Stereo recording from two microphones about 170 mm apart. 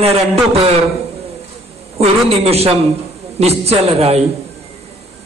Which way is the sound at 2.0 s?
35° right (ahead or behind).